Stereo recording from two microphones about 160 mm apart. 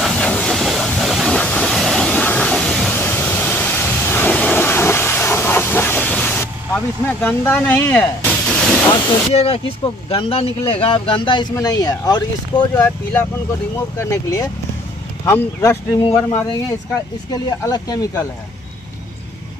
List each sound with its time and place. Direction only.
0.0 s train: 5° left (ahead or behind)
7.2 s speech: 10° left (ahead or behind)
9.3 s speech: 40° left (ahead or behind); by 18.2 s 25° left (ahead or behind)